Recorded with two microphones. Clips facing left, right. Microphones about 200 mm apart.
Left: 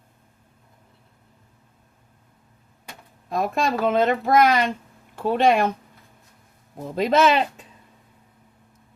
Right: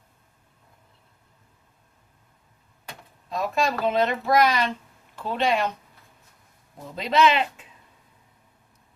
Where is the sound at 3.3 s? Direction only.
55° left (ahead or behind).